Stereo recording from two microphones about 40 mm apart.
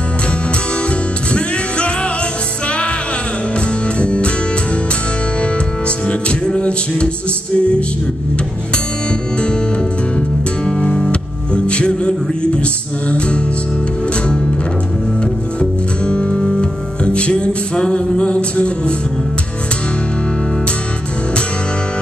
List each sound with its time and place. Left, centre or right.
3.8 s music: left
5.4 s music: left
10.1 s music: left
14.2 s music: left
16.1 s music: left